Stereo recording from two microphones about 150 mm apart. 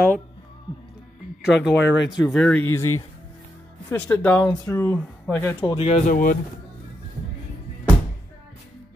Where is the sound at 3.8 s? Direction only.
10° left (ahead or behind).